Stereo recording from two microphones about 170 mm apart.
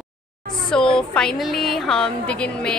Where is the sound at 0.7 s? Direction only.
5° left (ahead or behind).